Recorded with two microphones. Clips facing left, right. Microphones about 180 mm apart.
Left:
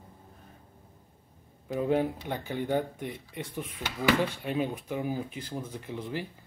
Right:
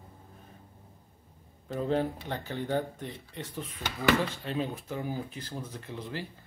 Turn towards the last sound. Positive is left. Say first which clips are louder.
# left 3 dB
turn(degrees=15)  # may be behind; listen again after turning